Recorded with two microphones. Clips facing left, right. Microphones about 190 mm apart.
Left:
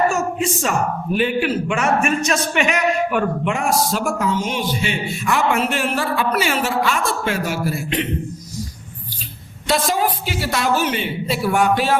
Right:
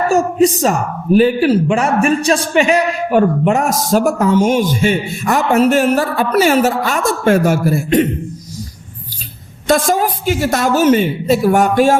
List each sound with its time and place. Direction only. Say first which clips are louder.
0.1 s speech: right 9 dB; 35° right (ahead or behind)
9.6 s a woman's voice: right 5 dB; 45° right (ahead or behind)